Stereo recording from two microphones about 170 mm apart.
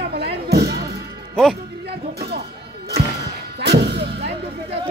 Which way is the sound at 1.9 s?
70° right (ahead or behind).